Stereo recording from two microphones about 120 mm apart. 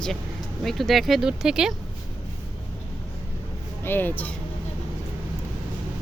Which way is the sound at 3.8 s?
15° left (ahead or behind).